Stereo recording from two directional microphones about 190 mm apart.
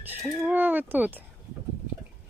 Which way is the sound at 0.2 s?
5° right (ahead or behind).